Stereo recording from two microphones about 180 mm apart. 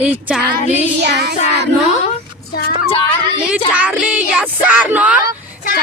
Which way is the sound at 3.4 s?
5° right (ahead or behind).